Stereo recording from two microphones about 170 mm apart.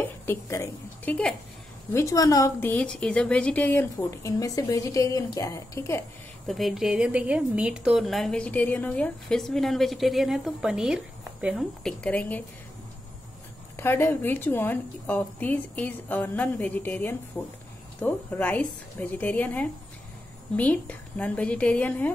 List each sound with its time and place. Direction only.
0.0 s a sound: 15° left (ahead or behind)
1.9 s a woman's voice: 15° left (ahead or behind)
6.4 s speech: centre (ahead or behind)
12.0 s a woman's voice: 10° left (ahead or behind)
13.7 s a woman's voice: 15° left (ahead or behind)